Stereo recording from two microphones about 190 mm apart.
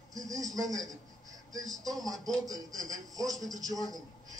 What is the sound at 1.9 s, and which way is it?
Speech, centre (ahead or behind).